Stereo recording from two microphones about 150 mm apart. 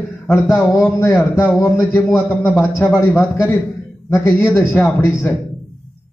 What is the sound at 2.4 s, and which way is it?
Speech, 5° right (ahead or behind).